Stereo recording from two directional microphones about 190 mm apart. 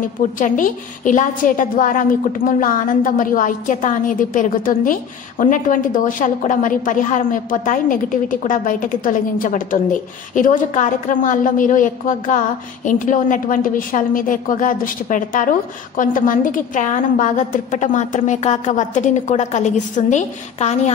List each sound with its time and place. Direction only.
0.0 s a woman's voice: 45° left (ahead or behind)